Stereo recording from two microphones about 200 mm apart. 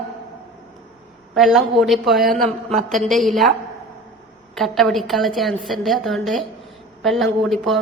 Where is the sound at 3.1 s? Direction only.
Centre (ahead or behind).